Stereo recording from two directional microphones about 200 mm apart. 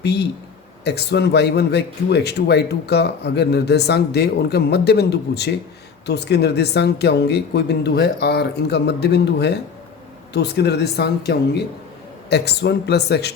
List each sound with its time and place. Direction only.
0.0 s a man's voice: 55° left (ahead or behind)